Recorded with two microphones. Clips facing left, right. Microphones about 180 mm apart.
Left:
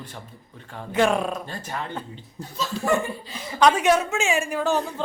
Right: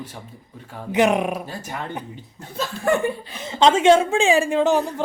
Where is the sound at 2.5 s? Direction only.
55° right (ahead or behind).